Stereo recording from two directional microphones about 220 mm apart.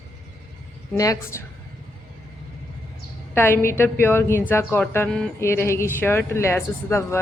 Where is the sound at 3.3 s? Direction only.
10° left (ahead or behind).